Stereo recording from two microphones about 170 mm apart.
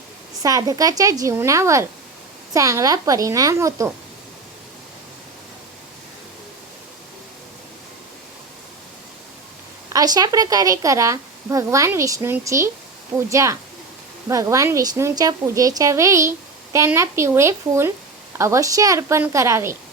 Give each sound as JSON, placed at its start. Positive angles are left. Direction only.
{"t": 0.4, "sound": "a woman's voice", "side_deg": -20}
{"t": 9.9, "sound": "a woman's voice", "side_deg": -20}